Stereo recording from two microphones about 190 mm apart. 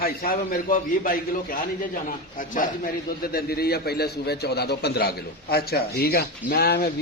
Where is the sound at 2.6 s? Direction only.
45° left (ahead or behind).